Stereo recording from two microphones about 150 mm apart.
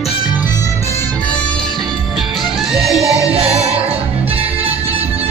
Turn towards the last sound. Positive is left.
turn(degrees=-40)  # may be behind; listen again after turning